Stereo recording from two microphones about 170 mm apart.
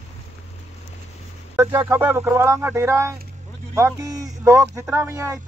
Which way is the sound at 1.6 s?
15° right (ahead or behind).